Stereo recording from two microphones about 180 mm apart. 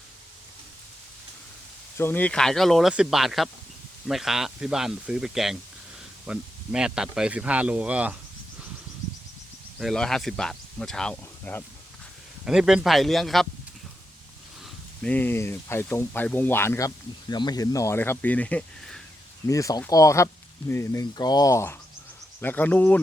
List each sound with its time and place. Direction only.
2.0 s speech: 10° left (ahead or behind); by 8.1 s 5° right (ahead or behind)
9.7 s speech: 5° left (ahead or behind)
12.5 s speech: 5° right (ahead or behind)
15.0 s speech: 10° left (ahead or behind)
19.5 s speech: 20° left (ahead or behind)